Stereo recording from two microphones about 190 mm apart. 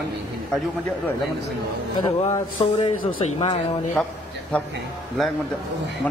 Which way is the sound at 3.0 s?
45° left (ahead or behind).